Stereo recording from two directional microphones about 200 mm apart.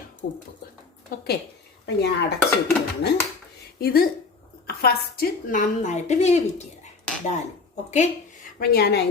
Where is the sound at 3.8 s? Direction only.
50° left (ahead or behind); by 6.4 s 35° left (ahead or behind).